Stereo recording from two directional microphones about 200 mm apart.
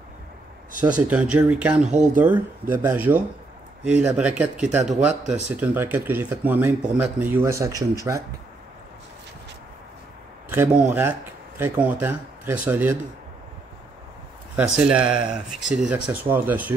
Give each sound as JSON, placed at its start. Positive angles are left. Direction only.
{"t": 0.9, "sound": "speech", "side_deg": -5}
{"t": 4.8, "sound": "speech", "side_deg": -35}
{"t": 5.6, "sound": "speech", "side_deg": -10}
{"t": 10.5, "sound": "speech", "side_deg": -10}
{"t": 14.5, "sound": "speech", "side_deg": -5}